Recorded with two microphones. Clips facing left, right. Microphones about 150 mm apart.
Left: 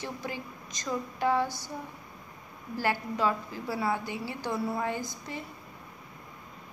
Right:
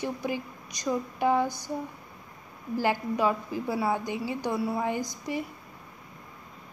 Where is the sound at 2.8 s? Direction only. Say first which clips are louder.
Right 3 dB; 15° right (ahead or behind).